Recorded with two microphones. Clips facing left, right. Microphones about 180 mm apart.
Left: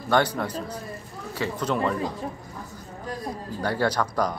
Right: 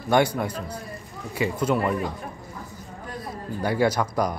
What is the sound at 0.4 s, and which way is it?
A man's voice, 10° right (ahead or behind).